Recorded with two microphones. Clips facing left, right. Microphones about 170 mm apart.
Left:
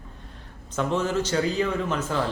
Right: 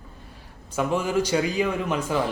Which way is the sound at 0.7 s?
10° right (ahead or behind).